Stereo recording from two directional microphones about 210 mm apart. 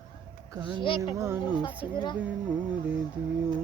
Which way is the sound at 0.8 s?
20° left (ahead or behind).